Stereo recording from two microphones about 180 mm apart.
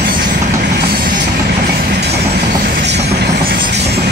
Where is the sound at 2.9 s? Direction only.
65° right (ahead or behind).